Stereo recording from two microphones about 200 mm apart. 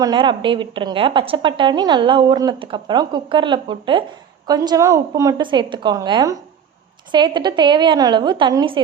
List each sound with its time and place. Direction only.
0.0 s a woman's voice: 20° right (ahead or behind)